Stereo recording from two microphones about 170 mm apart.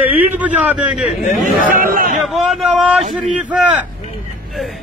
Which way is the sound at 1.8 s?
55° right (ahead or behind).